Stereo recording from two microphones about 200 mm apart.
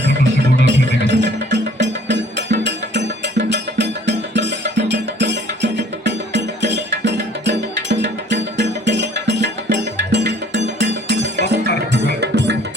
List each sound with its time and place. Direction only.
0.6 s music: 65° right (ahead or behind)